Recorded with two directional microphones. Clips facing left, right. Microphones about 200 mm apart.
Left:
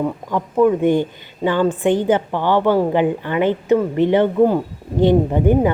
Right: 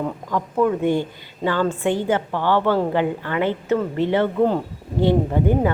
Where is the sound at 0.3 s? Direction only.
15° left (ahead or behind).